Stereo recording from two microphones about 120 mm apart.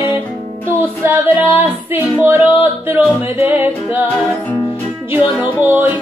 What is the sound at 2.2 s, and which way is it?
Music, 15° right (ahead or behind).